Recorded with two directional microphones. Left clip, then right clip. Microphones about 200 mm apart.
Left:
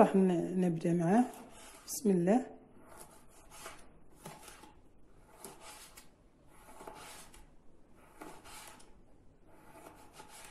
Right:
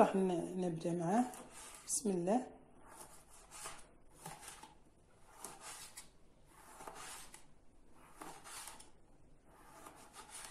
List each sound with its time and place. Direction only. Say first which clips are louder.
0.0 s a woman's voice: left 5 dB; 15° left (ahead or behind)